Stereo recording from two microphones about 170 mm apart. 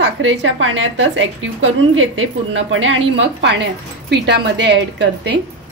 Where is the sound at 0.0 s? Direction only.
90° right.